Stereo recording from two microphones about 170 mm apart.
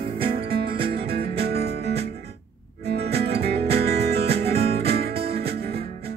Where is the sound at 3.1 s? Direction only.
35° right (ahead or behind).